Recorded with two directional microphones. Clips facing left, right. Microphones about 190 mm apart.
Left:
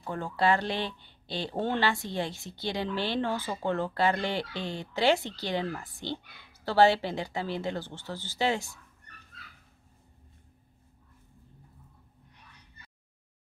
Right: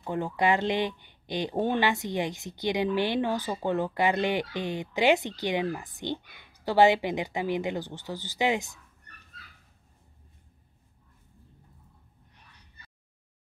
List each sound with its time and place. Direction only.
0.0 s speech: 15° right (ahead or behind)